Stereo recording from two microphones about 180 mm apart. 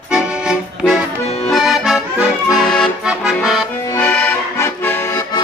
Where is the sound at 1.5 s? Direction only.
Centre (ahead or behind).